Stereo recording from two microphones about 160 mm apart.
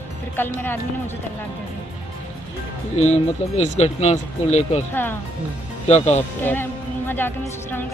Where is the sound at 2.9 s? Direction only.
45° left (ahead or behind).